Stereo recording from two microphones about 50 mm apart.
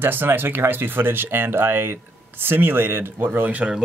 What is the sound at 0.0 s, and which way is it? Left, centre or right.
Speech, right.